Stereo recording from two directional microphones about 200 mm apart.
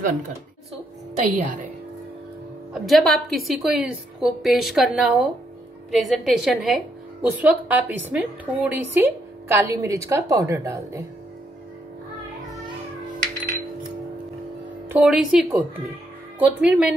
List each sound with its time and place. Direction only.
1.2 s a woman's voice: 40° right (ahead or behind)
2.7 s a woman's voice: centre (ahead or behind); by 11.1 s 15° right (ahead or behind)
14.9 s a woman's voice: 5° right (ahead or behind)